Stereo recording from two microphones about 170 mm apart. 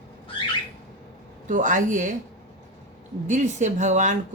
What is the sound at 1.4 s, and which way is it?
Speech, 50° right (ahead or behind).